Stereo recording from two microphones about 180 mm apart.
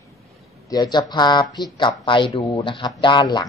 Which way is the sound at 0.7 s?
25° left (ahead or behind).